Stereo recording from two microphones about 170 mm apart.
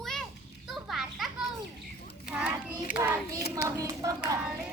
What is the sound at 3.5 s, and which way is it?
Hands, 20° right (ahead or behind).